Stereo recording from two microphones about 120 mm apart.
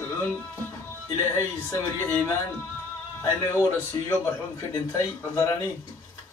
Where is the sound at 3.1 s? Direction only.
25° left (ahead or behind).